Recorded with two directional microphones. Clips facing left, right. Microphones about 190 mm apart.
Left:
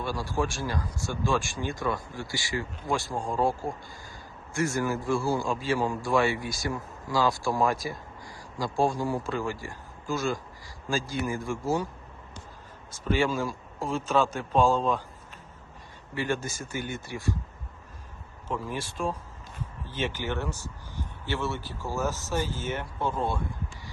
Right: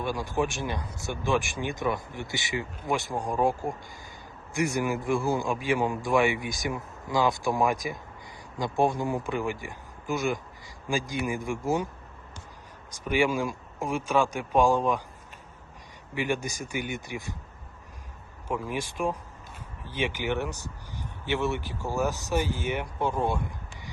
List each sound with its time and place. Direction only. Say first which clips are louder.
0.0 s a man's voice: right 1 dB; 20° right (ahead or behind)
12.9 s a man's voice: right 1 dB; 15° right (ahead or behind)
16.1 s a man's voice: right 1 dB; 15° right (ahead or behind)
18.4 s a man's voice: right 2 dB; 15° right (ahead or behind)